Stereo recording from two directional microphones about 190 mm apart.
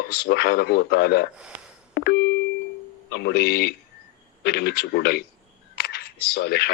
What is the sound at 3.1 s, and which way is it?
Speech, 55° left (ahead or behind).